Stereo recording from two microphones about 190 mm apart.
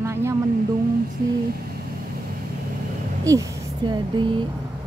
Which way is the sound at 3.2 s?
15° right (ahead or behind).